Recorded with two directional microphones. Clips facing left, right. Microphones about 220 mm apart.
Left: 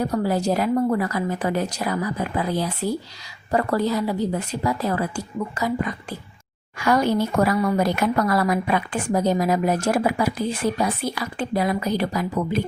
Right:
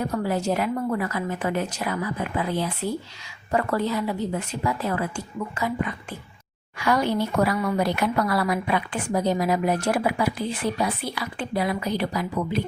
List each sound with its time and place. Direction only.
0.0 s a woman's voice: 35° left (ahead or behind)